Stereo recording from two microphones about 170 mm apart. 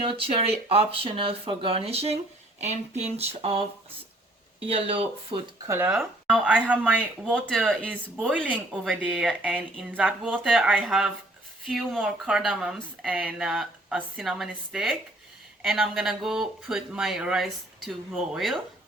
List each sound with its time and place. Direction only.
0.0 s speech: 35° right (ahead or behind)
3.2 s speech: 35° right (ahead or behind)
5.6 s speech: 15° right (ahead or behind)
7.3 s speech: 5° left (ahead or behind)